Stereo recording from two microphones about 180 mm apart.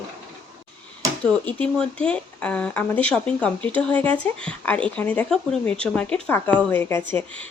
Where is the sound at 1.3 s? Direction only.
5° left (ahead or behind).